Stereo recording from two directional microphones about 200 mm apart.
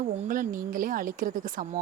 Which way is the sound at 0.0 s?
40° right (ahead or behind).